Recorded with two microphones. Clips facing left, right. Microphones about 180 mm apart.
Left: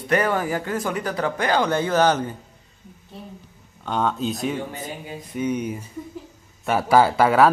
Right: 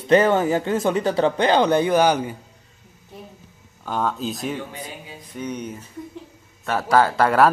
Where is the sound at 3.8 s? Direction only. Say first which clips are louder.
Left 1 dB; 5° right (ahead or behind).